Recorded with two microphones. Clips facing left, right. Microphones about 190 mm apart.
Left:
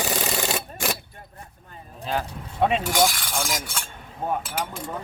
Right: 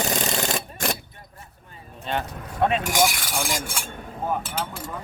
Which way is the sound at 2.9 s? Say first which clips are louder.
Even; 20° right (ahead or behind).